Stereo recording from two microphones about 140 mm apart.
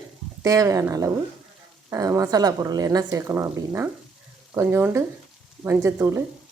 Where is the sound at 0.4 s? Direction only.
25° right (ahead or behind).